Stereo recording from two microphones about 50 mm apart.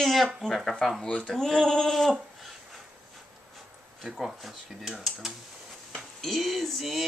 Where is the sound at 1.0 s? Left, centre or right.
Left.